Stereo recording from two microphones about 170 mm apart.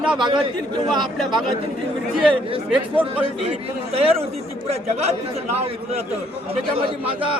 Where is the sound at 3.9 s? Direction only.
35° right (ahead or behind).